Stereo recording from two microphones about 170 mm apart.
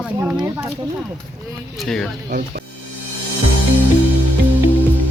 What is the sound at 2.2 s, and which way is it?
Speech, 55° right (ahead or behind).